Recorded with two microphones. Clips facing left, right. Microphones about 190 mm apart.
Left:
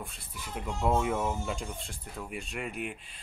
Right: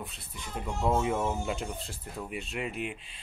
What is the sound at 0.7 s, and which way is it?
Speech, 5° right (ahead or behind).